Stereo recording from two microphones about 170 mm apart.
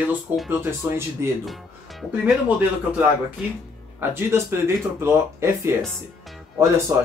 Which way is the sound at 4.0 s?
15° right (ahead or behind).